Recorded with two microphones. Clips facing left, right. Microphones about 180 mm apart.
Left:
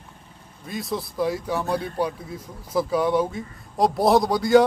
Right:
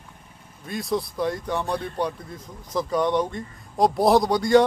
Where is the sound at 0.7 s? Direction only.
Centre (ahead or behind).